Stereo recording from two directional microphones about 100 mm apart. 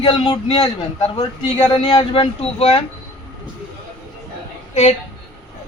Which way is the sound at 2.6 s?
75° left (ahead or behind).